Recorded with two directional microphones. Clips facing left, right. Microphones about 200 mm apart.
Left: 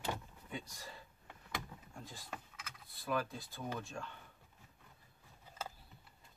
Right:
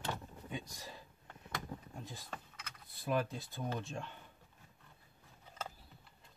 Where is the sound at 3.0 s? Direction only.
25° right (ahead or behind).